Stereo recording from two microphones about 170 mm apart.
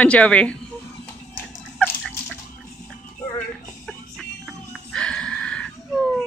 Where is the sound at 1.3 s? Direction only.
10° left (ahead or behind).